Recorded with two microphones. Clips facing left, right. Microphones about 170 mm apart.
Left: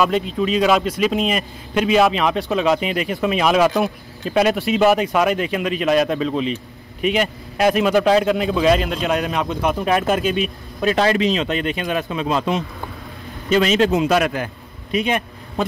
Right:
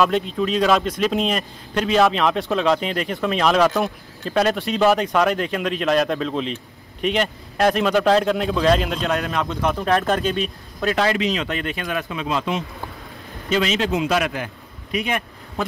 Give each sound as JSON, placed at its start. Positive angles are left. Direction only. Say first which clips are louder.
{"t": 0.0, "sound": "a man's voice", "louder": "left 1 dB", "side_deg": 0}
{"t": 9.1, "sound": "a man's voice", "louder": "left 2 dB", "side_deg": 15}
{"t": 10.9, "sound": "a man's voice", "louder": "left 3 dB", "side_deg": 30}
{"t": 14.9, "sound": "a sound", "louder": "left 4 dB", "side_deg": 25}